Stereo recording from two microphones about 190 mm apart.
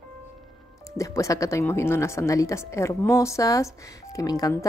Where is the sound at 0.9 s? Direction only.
15° left (ahead or behind).